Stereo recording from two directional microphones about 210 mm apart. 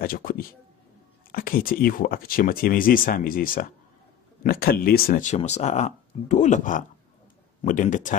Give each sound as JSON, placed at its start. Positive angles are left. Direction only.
{"t": 0.0, "sound": "speech", "side_deg": 45}